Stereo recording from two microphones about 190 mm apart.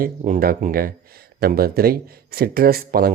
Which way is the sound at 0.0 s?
50° right (ahead or behind).